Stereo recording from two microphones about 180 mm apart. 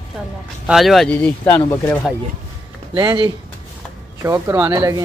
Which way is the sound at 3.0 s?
20° right (ahead or behind).